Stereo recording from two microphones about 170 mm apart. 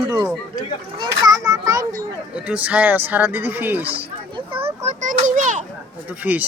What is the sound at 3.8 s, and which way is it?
A child's voice, 35° right (ahead or behind).